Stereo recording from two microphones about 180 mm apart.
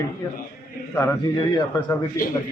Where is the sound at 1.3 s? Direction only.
20° left (ahead or behind).